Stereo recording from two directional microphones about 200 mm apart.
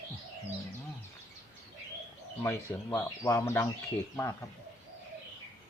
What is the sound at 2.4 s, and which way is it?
Speech, 15° left (ahead or behind).